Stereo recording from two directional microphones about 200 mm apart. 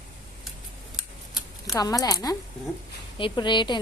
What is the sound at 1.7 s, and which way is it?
Speech, 20° left (ahead or behind).